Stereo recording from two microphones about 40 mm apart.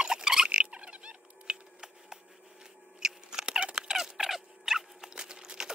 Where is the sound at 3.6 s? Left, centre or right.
Right.